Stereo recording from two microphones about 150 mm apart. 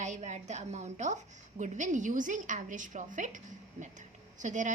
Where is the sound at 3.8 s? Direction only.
55° right (ahead or behind).